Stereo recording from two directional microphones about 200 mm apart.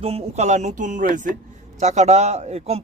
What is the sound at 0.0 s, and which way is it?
A man's voice, 30° right (ahead or behind).